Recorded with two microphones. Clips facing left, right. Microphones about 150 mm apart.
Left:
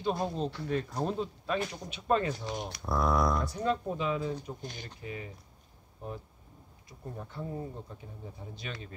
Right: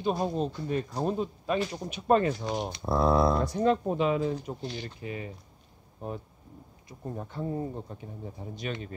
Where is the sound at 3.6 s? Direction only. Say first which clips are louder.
Right 6 dB; 65° right (ahead or behind).